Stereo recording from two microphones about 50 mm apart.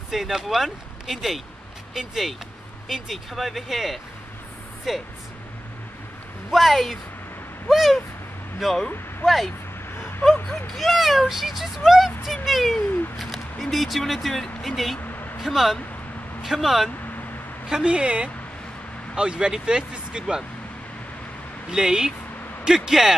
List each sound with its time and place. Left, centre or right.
0.1 s speech: centre
6.5 s speech: centre
10.7 s speech: centre
15.0 s a sound: left
15.4 s speech: centre
17.6 s a woman's voice: centre
21.6 s speech: centre